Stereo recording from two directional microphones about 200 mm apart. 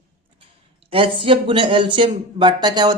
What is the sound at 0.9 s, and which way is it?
Speech, 25° right (ahead or behind).